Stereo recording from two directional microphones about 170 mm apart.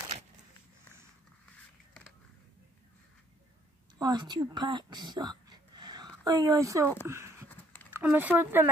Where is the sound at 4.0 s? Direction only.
25° right (ahead or behind).